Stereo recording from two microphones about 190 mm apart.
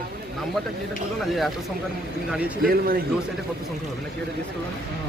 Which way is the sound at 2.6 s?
50° right (ahead or behind).